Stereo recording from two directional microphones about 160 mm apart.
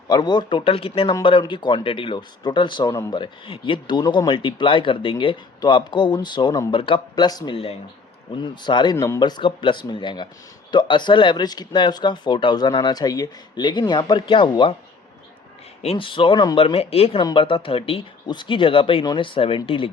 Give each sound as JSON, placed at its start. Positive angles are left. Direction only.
{"t": 0.1, "sound": "speech", "side_deg": 25}
{"t": 3.2, "sound": "speech", "side_deg": 35}
{"t": 15.8, "sound": "speech", "side_deg": 35}